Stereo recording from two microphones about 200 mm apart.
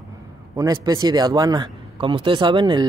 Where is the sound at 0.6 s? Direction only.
15° right (ahead or behind).